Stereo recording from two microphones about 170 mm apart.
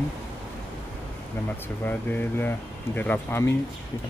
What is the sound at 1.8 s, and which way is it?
Speech, 10° left (ahead or behind).